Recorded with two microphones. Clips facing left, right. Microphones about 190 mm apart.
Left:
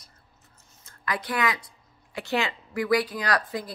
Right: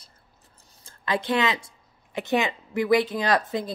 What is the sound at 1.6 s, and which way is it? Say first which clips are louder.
Speech: even; 20° right (ahead or behind).